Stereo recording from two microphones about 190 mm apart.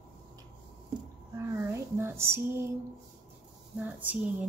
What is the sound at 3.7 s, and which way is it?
Speech, 10° right (ahead or behind).